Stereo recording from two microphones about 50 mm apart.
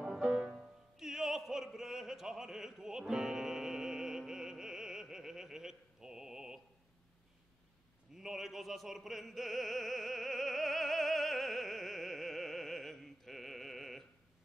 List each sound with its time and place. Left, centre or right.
0.0 s music: centre
0.9 s opera: centre
8.1 s opera: centre